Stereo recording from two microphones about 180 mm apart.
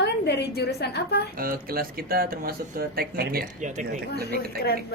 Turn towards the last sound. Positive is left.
turn(degrees=60)  # may be behind; listen again after turning